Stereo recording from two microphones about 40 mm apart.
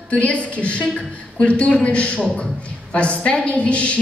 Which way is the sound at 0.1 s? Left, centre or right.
Left.